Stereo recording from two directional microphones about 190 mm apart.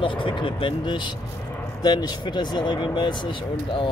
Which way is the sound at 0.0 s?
25° left (ahead or behind).